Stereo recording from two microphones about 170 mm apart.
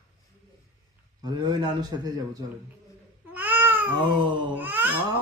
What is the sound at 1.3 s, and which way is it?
A man's voice, 25° right (ahead or behind).